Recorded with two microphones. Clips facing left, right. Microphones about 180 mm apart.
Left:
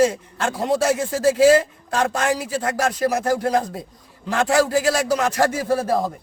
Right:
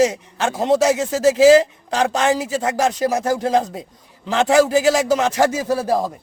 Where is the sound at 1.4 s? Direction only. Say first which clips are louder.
Right 4 dB; 90° right.